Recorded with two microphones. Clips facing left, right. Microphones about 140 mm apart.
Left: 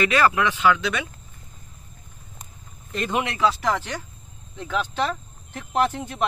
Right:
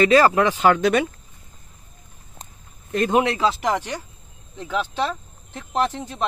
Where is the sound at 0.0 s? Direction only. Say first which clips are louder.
Right 5 dB; 35° right (ahead or behind).